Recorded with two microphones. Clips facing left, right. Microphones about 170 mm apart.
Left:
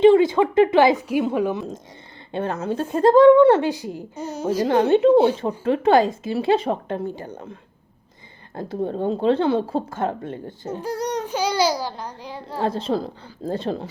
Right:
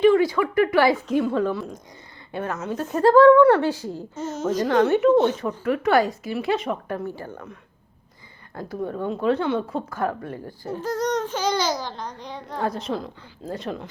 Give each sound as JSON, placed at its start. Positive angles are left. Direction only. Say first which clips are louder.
{"t": 0.0, "sound": "a woman's voice", "louder": "left 4 dB", "side_deg": 25}
{"t": 4.6, "sound": "a woman's voice", "louder": "left 2 dB", "side_deg": 30}
{"t": 10.8, "sound": "a child's voice", "louder": "right 2 dB", "side_deg": 10}
{"t": 12.5, "sound": "a woman's voice", "louder": "left 4 dB", "side_deg": 30}